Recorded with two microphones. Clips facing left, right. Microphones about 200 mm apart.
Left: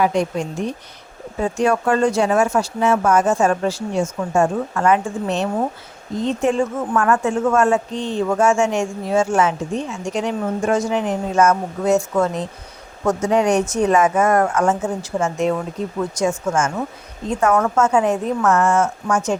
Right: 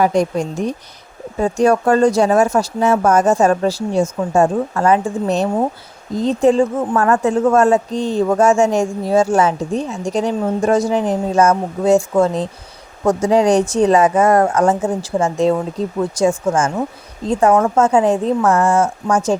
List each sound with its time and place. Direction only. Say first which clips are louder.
0.0 s speech: right 3 dB; 40° right (ahead or behind)